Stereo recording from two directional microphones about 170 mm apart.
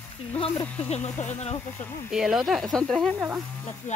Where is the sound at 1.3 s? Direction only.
40° left (ahead or behind).